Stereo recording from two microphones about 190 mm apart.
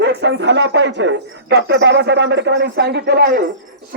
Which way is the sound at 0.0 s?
65° right (ahead or behind).